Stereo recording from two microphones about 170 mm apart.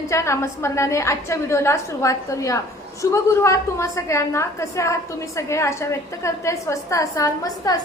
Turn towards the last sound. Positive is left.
turn(degrees=20)  # may be behind; listen again after turning